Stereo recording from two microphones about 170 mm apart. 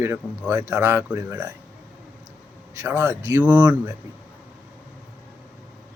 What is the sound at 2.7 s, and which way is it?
Speech, 15° right (ahead or behind).